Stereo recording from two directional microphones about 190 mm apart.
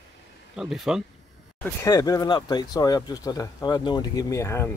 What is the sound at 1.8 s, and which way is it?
Speech, 20° left (ahead or behind).